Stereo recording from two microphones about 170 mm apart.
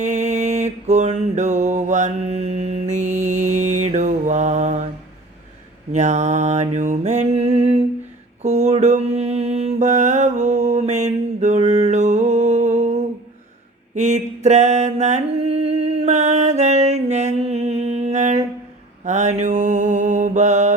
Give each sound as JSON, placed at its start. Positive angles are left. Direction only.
{"t": 0.0, "sound": "mantra", "side_deg": -45}
{"t": 5.9, "sound": "mantra", "side_deg": -45}